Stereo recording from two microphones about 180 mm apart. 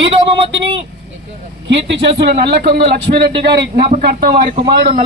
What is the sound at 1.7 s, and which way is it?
Speech, 75° right (ahead or behind).